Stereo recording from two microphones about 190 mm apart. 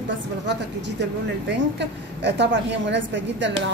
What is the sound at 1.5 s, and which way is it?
A woman's voice, 65° right (ahead or behind).